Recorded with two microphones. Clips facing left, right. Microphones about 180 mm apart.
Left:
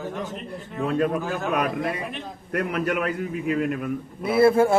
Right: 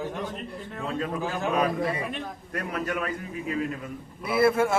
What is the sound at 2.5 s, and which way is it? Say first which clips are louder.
A man's voice: left 6 dB; 65° left (ahead or behind).